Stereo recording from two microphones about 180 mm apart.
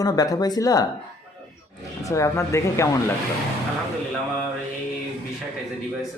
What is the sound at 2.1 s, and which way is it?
Speech, 15° left (ahead or behind).